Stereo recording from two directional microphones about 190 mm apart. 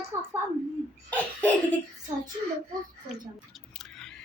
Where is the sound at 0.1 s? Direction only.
15° right (ahead or behind).